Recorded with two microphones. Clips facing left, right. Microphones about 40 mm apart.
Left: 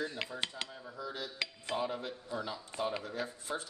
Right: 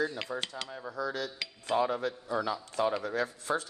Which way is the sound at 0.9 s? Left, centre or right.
Right.